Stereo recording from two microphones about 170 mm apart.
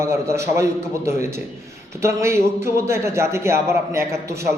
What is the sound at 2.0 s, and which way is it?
A man's voice, 15° right (ahead or behind).